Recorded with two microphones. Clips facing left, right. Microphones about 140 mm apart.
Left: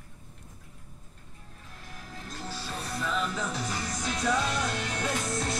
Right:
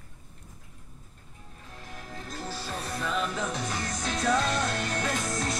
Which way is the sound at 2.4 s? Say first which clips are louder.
Right 1 dB; centre (ahead or behind).